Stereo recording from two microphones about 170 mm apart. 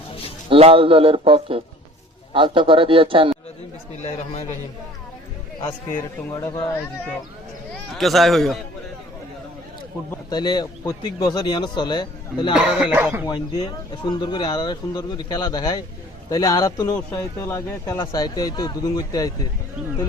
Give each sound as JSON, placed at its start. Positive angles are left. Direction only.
{"t": 0.5, "sound": "a man's voice", "side_deg": -35}
{"t": 3.9, "sound": "a man's voice", "side_deg": 40}
{"t": 5.6, "sound": "a man's voice", "side_deg": 15}
{"t": 7.9, "sound": "a man's voice", "side_deg": 0}
{"t": 10.2, "sound": "speech", "side_deg": 25}
{"t": 12.5, "sound": "a man's voice", "side_deg": -5}
{"t": 13.2, "sound": "speech", "side_deg": 25}